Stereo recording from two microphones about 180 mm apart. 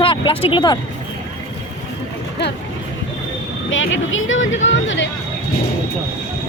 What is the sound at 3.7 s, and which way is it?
Speech, 90° left.